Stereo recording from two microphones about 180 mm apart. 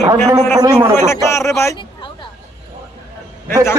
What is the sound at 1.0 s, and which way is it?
Speech, 15° left (ahead or behind).